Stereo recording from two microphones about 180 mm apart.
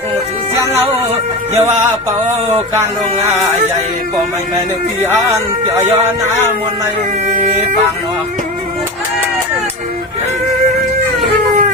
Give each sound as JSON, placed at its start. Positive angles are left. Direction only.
{"t": 1.5, "sound": "a sound", "side_deg": -15}
{"t": 5.3, "sound": "speech", "side_deg": -20}
{"t": 7.3, "sound": "speech", "side_deg": -40}